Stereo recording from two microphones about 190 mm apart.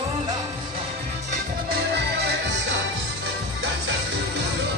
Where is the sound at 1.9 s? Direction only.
60° right (ahead or behind).